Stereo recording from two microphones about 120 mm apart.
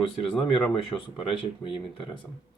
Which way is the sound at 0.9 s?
25° left (ahead or behind).